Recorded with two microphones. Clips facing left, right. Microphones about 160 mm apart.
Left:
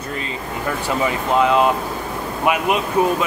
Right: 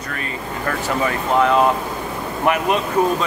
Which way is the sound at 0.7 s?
15° left (ahead or behind).